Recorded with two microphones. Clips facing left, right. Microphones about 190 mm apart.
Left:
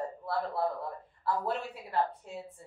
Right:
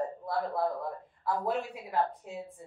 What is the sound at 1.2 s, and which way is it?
Speech, 15° right (ahead or behind).